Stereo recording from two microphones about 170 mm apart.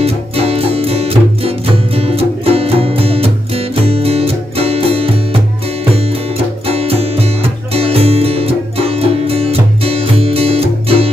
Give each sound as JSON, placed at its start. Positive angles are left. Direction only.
{"t": 0.0, "sound": "music", "side_deg": -35}
{"t": 6.7, "sound": "music", "side_deg": -35}